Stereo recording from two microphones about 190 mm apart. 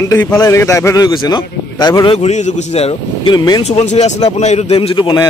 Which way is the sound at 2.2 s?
35° left (ahead or behind).